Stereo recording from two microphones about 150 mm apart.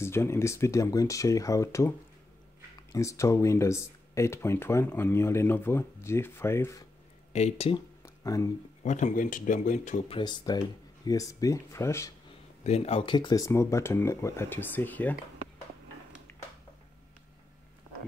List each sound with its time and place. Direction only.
0.0 s speech: 15° left (ahead or behind)
7.3 s speech: 45° left (ahead or behind)
8.0 s a sound: 20° left (ahead or behind)
8.8 s speech: 55° left (ahead or behind)
10.0 s speech: 30° left (ahead or behind)
12.6 s speech: 45° left (ahead or behind); by 15.1 s 10° left (ahead or behind)
16.3 s a sound: 15° left (ahead or behind)